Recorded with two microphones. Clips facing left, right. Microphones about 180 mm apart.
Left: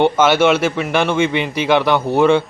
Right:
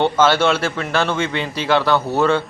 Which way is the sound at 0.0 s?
10° left (ahead or behind).